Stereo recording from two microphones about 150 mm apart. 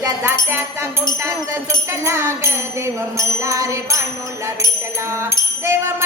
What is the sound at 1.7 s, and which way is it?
Music, 20° right (ahead or behind).